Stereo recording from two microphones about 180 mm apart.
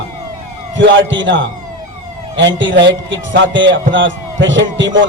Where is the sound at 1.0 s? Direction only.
90° right.